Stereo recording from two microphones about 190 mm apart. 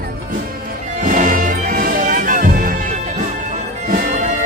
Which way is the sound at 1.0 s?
45° right (ahead or behind).